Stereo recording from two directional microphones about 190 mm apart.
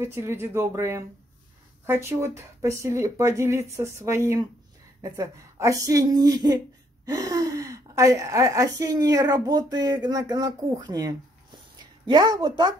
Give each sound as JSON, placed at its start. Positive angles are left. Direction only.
{"t": 0.0, "sound": "speech", "side_deg": -15}